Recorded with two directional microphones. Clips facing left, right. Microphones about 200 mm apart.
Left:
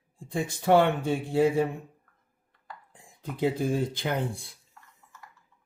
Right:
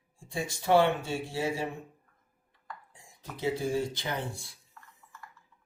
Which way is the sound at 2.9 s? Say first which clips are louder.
Left 6 dB; 55° left (ahead or behind).